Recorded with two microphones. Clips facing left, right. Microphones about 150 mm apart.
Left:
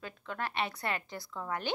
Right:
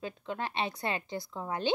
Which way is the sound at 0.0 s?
20° right (ahead or behind).